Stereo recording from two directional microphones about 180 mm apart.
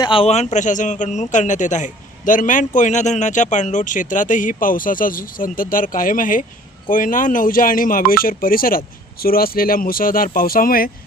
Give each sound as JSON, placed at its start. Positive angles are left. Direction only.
{"t": 0.0, "sound": "a man's voice", "side_deg": 30}